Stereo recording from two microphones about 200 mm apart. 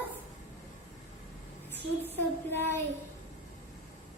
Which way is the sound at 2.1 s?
10° left (ahead or behind).